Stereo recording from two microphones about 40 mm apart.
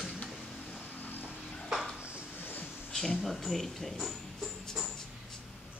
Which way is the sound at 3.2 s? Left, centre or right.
Centre.